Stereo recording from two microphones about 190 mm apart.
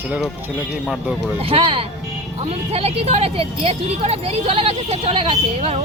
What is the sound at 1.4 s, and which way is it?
Speech, 30° right (ahead or behind).